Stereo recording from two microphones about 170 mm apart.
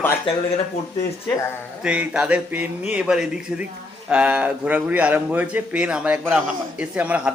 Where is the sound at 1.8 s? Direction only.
5° right (ahead or behind).